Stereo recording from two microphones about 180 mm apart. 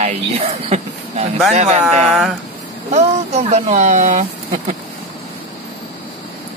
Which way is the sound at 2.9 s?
40° right (ahead or behind).